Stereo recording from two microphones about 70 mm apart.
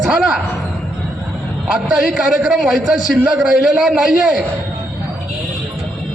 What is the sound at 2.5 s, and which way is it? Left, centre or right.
A man's voice, centre.